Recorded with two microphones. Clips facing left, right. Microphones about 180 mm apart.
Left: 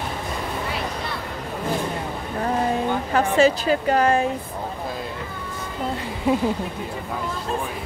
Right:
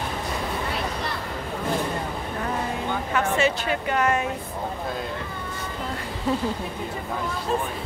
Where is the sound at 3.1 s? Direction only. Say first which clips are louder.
Left 5 dB; 35° left (ahead or behind).